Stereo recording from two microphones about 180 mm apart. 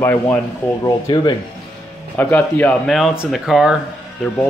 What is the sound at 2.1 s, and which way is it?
A man's voice, 10° left (ahead or behind).